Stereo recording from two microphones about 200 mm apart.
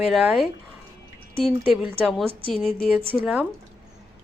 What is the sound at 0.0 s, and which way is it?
Speech, centre (ahead or behind).